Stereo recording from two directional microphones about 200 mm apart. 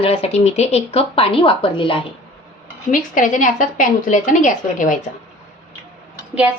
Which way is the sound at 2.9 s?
40° left (ahead or behind).